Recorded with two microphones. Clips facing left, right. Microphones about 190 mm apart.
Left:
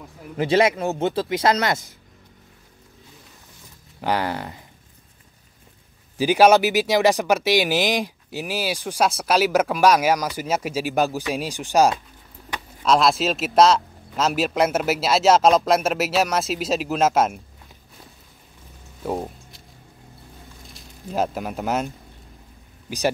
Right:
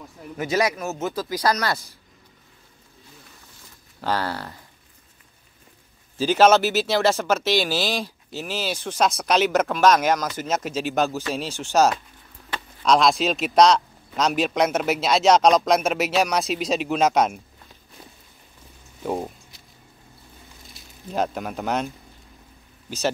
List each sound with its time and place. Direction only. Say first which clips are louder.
0.4 s speech: left 5 dB; 30° left (ahead or behind)
4.0 s speech: left 2 dB; 15° left (ahead or behind)
6.1 s speech: left 2 dB; 10° left (ahead or behind)
12.4 s keys jangling: even; 15° left (ahead or behind)
12.9 s a man's voice: even; 5° left (ahead or behind)
19.0 s a sound: even; centre (ahead or behind)
20.7 s speech: left 1 dB; 5° left (ahead or behind)